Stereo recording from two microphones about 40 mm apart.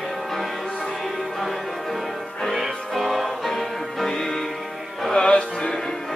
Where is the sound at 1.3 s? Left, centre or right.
Centre.